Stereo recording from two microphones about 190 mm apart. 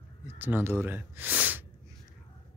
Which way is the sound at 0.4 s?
10° right (ahead or behind).